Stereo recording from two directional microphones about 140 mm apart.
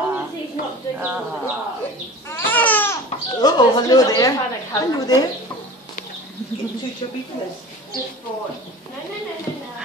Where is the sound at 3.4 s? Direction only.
30° left (ahead or behind).